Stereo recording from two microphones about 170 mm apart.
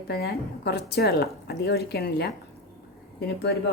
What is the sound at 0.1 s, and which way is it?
A woman's voice, 65° left (ahead or behind).